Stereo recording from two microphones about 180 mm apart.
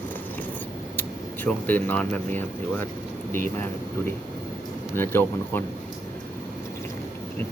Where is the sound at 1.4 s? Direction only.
10° left (ahead or behind).